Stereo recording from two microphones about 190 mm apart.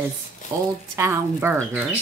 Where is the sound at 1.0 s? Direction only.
15° right (ahead or behind).